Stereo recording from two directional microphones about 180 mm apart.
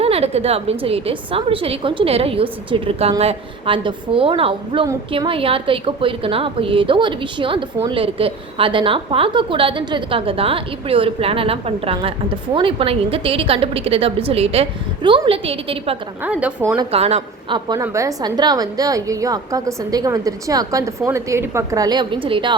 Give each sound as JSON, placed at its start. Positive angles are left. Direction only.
{"t": 0.0, "sound": "a woman's voice", "side_deg": -35}
{"t": 16.2, "sound": "a woman's voice", "side_deg": -5}
{"t": 16.9, "sound": "a woman's voice", "side_deg": -35}
{"t": 17.8, "sound": "a woman's voice", "side_deg": -15}